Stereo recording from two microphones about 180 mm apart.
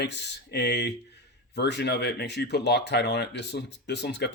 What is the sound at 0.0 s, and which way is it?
Speech, 70° left (ahead or behind).